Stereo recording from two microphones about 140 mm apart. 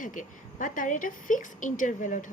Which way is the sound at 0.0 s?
70° left (ahead or behind).